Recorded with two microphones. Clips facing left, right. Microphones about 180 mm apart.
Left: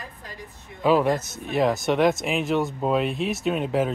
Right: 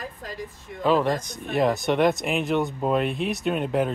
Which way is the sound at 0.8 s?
10° left (ahead or behind).